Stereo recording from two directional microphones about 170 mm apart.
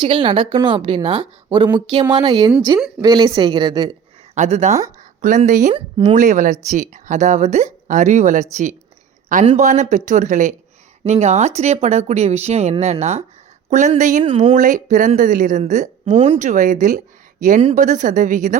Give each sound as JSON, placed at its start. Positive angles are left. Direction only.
{"t": 0.0, "sound": "a woman's voice", "side_deg": -30}
{"t": 4.4, "sound": "speech", "side_deg": -40}
{"t": 5.7, "sound": "a woman's voice", "side_deg": -30}
{"t": 6.1, "sound": "speech", "side_deg": -50}
{"t": 14.3, "sound": "speech", "side_deg": -35}